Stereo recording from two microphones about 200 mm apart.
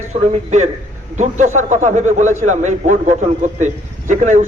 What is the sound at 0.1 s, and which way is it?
A man's voice, 35° right (ahead or behind).